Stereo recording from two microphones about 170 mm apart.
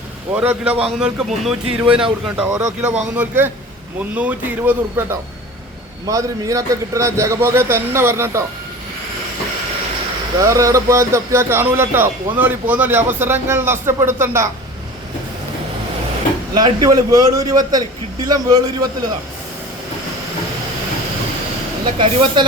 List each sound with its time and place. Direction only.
0.3 s speech: 5° right (ahead or behind)
2.4 s a man's voice: 20° right (ahead or behind)
6.1 s speech: 20° right (ahead or behind)
10.4 s speech: 20° right (ahead or behind)
16.6 s a man's voice: 25° right (ahead or behind)
21.9 s speech: 30° right (ahead or behind)